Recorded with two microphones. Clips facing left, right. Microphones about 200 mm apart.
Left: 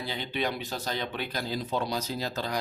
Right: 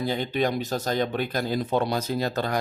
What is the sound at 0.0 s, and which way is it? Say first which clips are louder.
Speech: right 7 dB; 45° right (ahead or behind).